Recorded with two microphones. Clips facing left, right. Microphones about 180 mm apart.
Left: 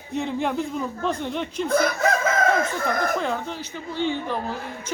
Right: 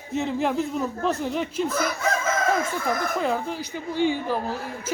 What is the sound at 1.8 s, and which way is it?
Chicken, 60° left (ahead or behind).